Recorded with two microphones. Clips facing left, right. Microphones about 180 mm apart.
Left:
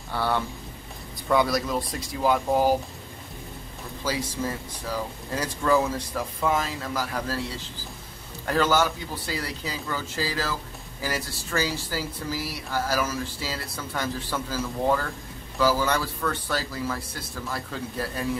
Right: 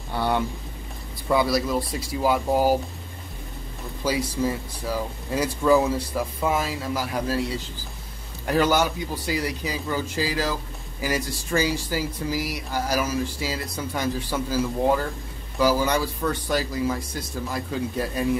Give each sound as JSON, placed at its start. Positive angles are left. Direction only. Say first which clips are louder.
{"t": 0.1, "sound": "speech", "louder": "right 2 dB", "side_deg": -15}
{"t": 1.3, "sound": "speech", "louder": "right 1 dB", "side_deg": -5}
{"t": 4.0, "sound": "speech", "louder": "right 4 dB", "side_deg": -10}
{"t": 8.5, "sound": "speech", "louder": "right 2 dB", "side_deg": -15}